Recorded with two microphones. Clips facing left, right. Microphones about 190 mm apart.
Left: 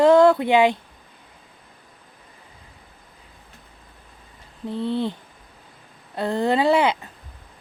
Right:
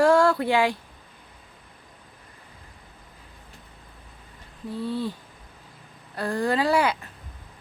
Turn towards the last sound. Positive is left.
turn(degrees=25)  # may be behind; listen again after turning